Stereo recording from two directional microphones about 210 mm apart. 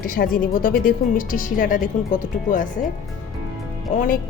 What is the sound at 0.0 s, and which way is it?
Speech, 40° left (ahead or behind).